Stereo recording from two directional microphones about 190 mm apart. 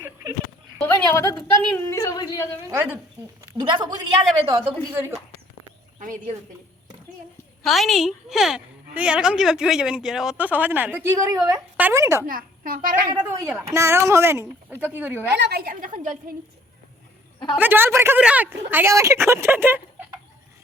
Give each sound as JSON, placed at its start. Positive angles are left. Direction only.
{"t": 0.0, "sound": "a sound", "side_deg": -15}
{"t": 0.8, "sound": "a woman's voice", "side_deg": 10}
{"t": 2.6, "sound": "a woman's voice", "side_deg": -10}
{"t": 6.0, "sound": "speech", "side_deg": -45}
{"t": 7.6, "sound": "a woman's voice", "side_deg": 0}
{"t": 12.2, "sound": "a child's voice", "side_deg": -50}
{"t": 13.1, "sound": "speech", "side_deg": -20}
{"t": 15.4, "sound": "a woman's voice", "side_deg": -55}
{"t": 17.6, "sound": "speech", "side_deg": -10}